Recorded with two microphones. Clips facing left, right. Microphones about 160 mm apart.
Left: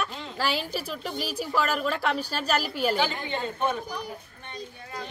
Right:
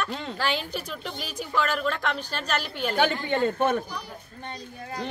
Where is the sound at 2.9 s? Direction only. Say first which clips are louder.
Right 4 dB; 55° right (ahead or behind).